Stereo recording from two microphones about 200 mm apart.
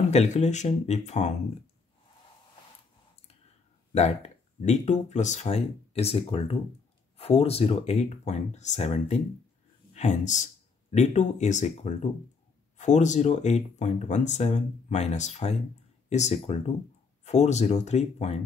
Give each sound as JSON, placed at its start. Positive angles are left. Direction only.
{"t": 0.1, "sound": "speech", "side_deg": 35}
{"t": 3.9, "sound": "speech", "side_deg": 35}